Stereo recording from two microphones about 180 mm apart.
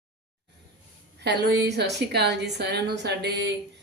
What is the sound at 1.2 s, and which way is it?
Speech, 70° right (ahead or behind).